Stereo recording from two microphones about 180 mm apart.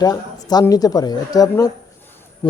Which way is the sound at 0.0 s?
20° left (ahead or behind).